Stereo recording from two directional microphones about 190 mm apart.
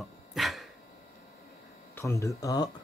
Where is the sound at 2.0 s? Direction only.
15° left (ahead or behind).